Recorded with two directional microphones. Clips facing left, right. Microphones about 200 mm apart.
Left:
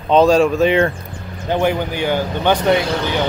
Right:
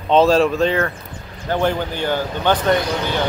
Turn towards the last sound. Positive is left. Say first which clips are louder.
# left 2 dB
turn(degrees=10)  # may be behind; listen again after turning